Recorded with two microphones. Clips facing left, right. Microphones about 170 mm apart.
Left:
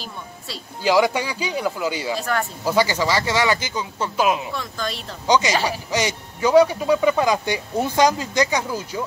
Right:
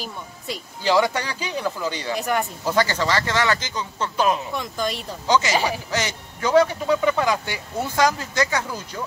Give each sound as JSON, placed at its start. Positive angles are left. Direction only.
{"t": 0.8, "sound": "speech", "side_deg": 10}
{"t": 2.1, "sound": "speech", "side_deg": -20}
{"t": 2.6, "sound": "speech", "side_deg": 10}
{"t": 4.6, "sound": "speech", "side_deg": -15}
{"t": 5.2, "sound": "speech", "side_deg": 15}